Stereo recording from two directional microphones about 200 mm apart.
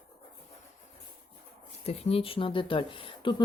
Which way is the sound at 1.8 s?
30° left (ahead or behind).